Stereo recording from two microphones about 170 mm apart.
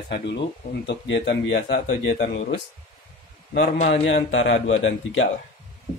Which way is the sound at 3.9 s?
90° left.